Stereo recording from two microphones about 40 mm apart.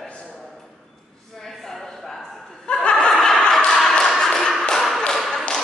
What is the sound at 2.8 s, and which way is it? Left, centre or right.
Snicker, left.